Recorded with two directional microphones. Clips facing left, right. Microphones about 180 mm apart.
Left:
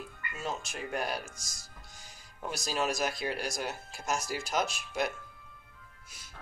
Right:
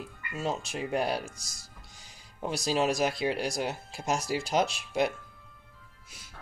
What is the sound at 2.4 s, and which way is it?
Speech, 30° right (ahead or behind).